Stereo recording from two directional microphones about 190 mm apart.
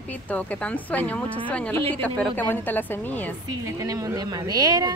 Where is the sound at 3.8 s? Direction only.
20° right (ahead or behind).